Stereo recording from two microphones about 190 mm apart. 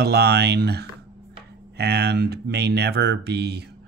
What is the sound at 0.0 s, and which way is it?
Speech, 60° right (ahead or behind).